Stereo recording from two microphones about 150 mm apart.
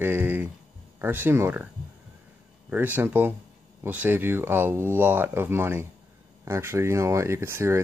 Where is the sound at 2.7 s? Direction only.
15° right (ahead or behind).